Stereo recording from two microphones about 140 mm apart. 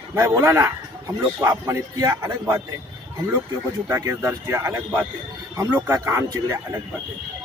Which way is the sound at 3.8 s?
20° right (ahead or behind).